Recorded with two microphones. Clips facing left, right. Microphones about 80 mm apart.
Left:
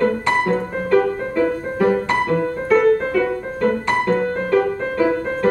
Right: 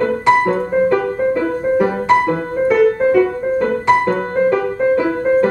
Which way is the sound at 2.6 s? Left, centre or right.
Centre.